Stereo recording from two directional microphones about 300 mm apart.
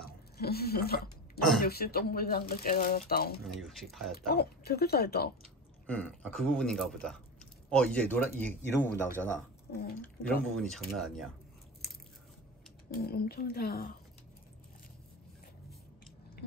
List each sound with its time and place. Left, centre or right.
0.0 s hiccup: left
1.6 s speech: left
3.4 s speech: centre
4.3 s speech: left
5.9 s speech: centre
10.4 s speech: centre
12.9 s a woman's voice: left